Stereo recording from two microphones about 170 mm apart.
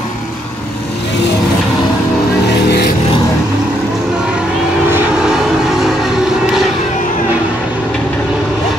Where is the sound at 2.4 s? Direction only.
75° left (ahead or behind).